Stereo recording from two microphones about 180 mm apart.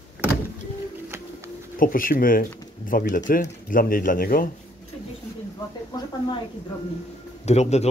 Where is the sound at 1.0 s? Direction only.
15° right (ahead or behind).